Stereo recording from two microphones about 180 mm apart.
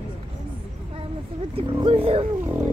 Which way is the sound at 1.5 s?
30° right (ahead or behind).